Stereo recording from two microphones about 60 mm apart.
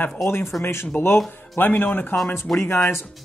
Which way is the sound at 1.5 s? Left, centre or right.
Left.